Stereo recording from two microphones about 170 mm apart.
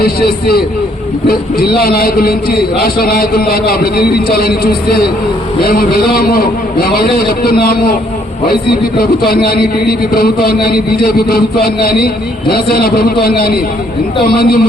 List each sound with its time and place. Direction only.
0.0 s a man's voice: 65° left (ahead or behind)
9.0 s a man's voice: 65° left (ahead or behind)